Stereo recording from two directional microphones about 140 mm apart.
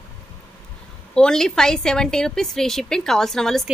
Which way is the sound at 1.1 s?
5° left (ahead or behind).